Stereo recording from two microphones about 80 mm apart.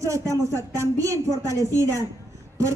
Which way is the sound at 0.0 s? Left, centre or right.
Right.